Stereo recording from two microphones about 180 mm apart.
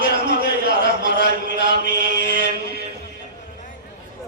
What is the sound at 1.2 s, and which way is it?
Chant, 55° right (ahead or behind).